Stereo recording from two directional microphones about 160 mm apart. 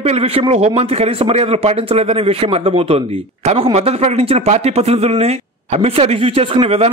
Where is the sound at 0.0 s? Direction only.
40° right (ahead or behind).